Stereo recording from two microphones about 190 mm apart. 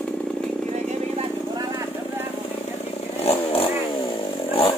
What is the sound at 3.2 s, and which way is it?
Vehicle, 30° left (ahead or behind).